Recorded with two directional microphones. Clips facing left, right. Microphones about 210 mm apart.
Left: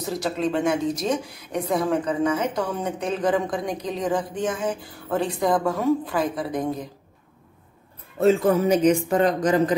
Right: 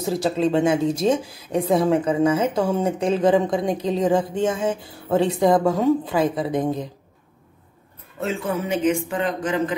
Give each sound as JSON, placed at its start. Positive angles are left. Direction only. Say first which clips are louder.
{"t": 0.2, "sound": "a woman's voice", "louder": "right 4 dB", "side_deg": -30}
{"t": 8.2, "sound": "speech", "louder": "left 7 dB", "side_deg": 40}